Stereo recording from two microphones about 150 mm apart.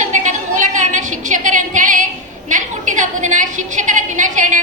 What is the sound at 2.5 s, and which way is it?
A woman's voice, 55° right (ahead or behind).